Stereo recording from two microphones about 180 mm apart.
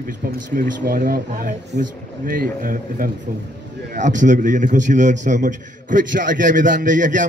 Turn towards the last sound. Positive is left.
turn(degrees=-45)  # may be behind; listen again after turning